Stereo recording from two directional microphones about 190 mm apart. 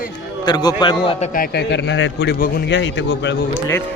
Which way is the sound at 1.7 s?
70° left (ahead or behind).